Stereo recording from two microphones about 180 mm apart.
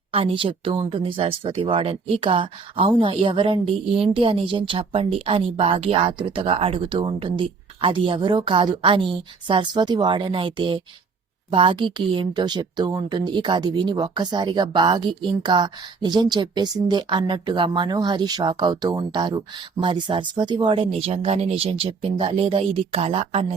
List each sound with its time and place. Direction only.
0.1 s speech: 30° right (ahead or behind)